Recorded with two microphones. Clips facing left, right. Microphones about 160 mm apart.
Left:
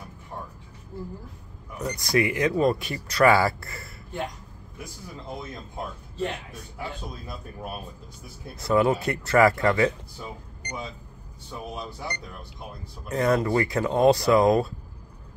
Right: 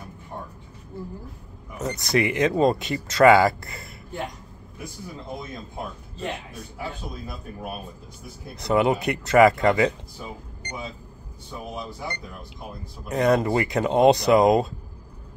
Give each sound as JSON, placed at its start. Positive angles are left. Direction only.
{"t": 1.8, "sound": "speech", "side_deg": -25}
{"t": 8.5, "sound": "speech", "side_deg": -20}
{"t": 13.1, "sound": "speech", "side_deg": -20}